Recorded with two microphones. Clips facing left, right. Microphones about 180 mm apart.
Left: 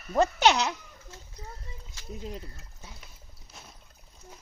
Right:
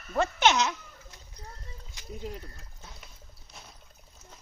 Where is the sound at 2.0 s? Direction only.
15° right (ahead or behind).